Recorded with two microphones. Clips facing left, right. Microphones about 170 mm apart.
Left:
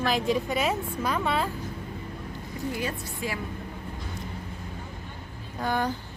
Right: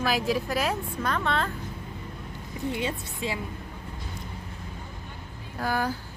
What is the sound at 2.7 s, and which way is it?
Speech, 25° right (ahead or behind).